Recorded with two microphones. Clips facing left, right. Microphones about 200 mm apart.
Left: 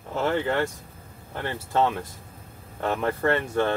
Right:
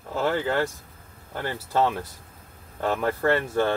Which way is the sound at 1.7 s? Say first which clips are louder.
Even; centre (ahead or behind).